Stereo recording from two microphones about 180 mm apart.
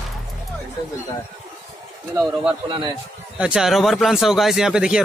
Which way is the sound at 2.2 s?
5° right (ahead or behind).